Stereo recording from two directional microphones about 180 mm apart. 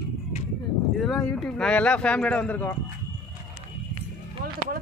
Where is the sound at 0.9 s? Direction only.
Centre (ahead or behind).